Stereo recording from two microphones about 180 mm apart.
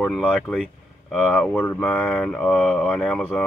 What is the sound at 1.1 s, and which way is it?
Mantra, 5° left (ahead or behind).